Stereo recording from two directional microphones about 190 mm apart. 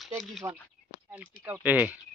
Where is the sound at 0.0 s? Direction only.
Centre (ahead or behind).